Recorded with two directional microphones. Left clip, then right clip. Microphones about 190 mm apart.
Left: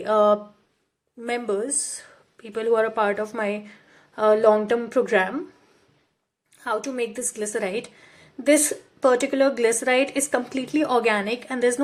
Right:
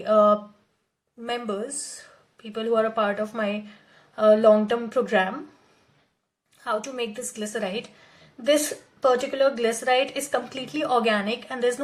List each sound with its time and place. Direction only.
0.0 s speech: 30° left (ahead or behind)
6.6 s speech: 25° left (ahead or behind)